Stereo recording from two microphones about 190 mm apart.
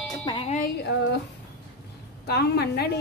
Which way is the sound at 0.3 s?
30° left (ahead or behind).